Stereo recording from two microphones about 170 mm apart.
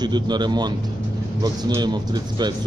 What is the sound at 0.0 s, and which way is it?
Speech, 25° right (ahead or behind).